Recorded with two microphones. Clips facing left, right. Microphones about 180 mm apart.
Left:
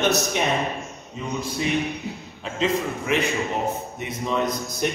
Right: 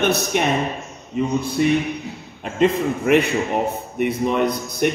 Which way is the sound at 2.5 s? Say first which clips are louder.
Right 6 dB; 55° right (ahead or behind).